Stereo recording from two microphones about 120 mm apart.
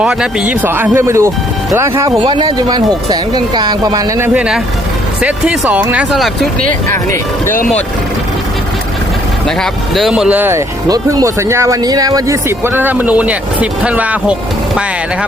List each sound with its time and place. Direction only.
0.0 s speech: 5° right (ahead or behind); by 2.0 s 25° right (ahead or behind)
2.0 s a woman's voice: 45° right (ahead or behind)
4.4 s speech: 5° right (ahead or behind)
6.9 s speech: 20° left (ahead or behind)
9.6 s speech: centre (ahead or behind); by 10.6 s 15° right (ahead or behind)
10.8 s speech: 30° right (ahead or behind); by 14.3 s 10° right (ahead or behind)